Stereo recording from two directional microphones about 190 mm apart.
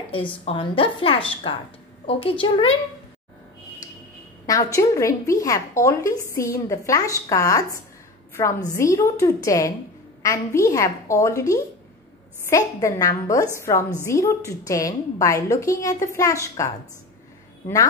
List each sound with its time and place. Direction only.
0.1 s a woman's voice: 30° left (ahead or behind)
4.5 s a woman's voice: 15° left (ahead or behind)